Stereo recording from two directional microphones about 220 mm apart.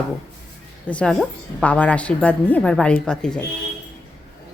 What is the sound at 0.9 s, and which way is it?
A woman's voice, 5° left (ahead or behind).